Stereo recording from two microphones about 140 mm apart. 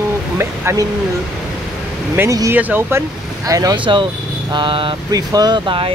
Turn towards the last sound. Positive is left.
turn(degrees=-35)  # may be behind; listen again after turning